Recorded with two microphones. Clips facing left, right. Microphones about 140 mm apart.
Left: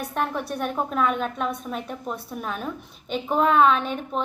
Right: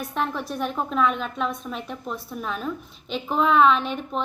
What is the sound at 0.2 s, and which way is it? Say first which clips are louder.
A woman's voice: even; 50° left (ahead or behind).